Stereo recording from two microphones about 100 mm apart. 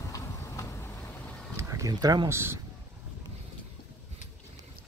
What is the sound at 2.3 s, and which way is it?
Speech, 25° right (ahead or behind).